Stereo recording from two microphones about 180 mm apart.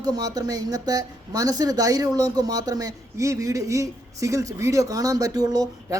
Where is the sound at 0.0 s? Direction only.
20° right (ahead or behind).